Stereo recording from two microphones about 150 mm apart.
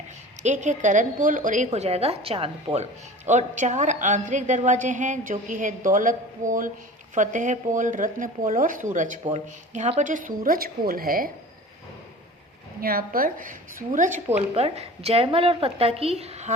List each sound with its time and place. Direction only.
0.4 s a woman's voice: 55° right (ahead or behind); by 11.3 s 70° right (ahead or behind)
12.8 s a woman's voice: 80° right; by 14.2 s 60° right (ahead or behind)
14.3 s a woman's voice: 45° right (ahead or behind)